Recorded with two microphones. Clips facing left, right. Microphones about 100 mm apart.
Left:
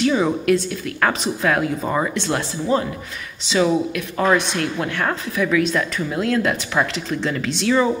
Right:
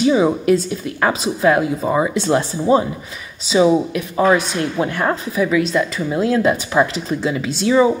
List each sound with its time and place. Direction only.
0.0 s a woman's voice: 15° right (ahead or behind)
2.3 s a woman's voice: 25° right (ahead or behind)